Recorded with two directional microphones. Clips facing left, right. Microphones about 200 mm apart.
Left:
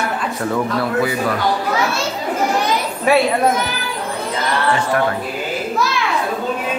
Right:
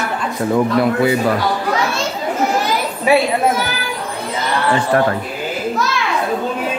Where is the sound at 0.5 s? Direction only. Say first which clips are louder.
Right 5 dB; 20° right (ahead or behind).